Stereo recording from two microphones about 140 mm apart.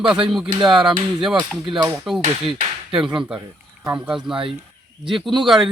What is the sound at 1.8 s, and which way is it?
Speech, centre (ahead or behind).